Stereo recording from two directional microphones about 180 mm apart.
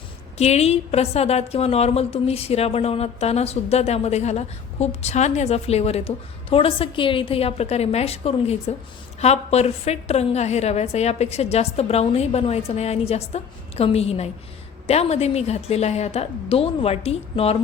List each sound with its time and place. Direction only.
0.3 s a woman's voice: 35° left (ahead or behind)